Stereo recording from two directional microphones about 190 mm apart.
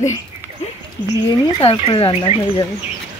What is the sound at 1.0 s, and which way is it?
Speech, 25° right (ahead or behind).